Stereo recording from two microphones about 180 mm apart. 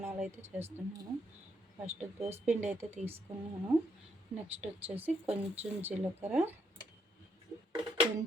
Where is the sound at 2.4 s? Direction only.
10° right (ahead or behind).